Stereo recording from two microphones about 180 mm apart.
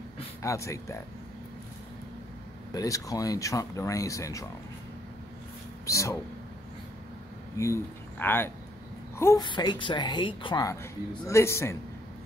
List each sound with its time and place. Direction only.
0.4 s speech: 15° left (ahead or behind)
2.7 s speech: 20° left (ahead or behind)
5.9 s speech: 15° left (ahead or behind)
7.5 s a woman's voice: 15° left (ahead or behind)